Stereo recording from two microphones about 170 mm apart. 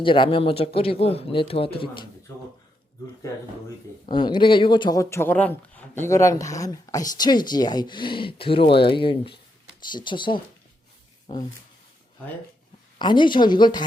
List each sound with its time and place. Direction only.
0.0 s speech: 30° left (ahead or behind)
4.0 s speech: 30° left (ahead or behind)
13.0 s speech: 25° left (ahead or behind)